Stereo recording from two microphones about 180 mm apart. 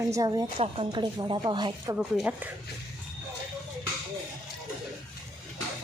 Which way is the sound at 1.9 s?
5° right (ahead or behind).